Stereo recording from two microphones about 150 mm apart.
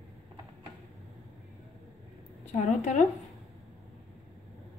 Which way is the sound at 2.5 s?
45° left (ahead or behind).